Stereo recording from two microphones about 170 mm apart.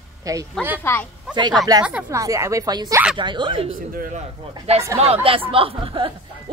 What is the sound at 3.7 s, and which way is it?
Speech, 55° right (ahead or behind).